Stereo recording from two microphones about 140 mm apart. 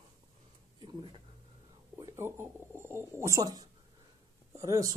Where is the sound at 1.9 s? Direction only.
20° right (ahead or behind).